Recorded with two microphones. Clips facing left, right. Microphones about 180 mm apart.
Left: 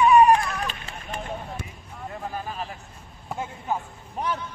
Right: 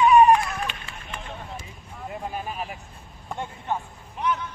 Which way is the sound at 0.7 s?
40° left (ahead or behind).